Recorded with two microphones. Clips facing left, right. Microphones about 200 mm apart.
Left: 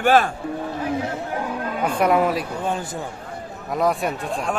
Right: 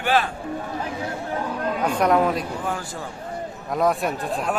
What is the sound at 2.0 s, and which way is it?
Speech, 5° left (ahead or behind).